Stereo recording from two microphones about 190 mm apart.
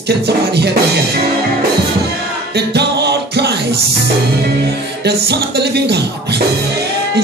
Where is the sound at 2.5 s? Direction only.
60° right (ahead or behind).